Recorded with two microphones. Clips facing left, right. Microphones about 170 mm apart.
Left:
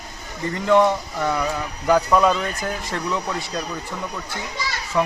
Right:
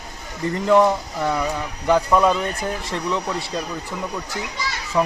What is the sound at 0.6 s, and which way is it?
Speech, 5° right (ahead or behind).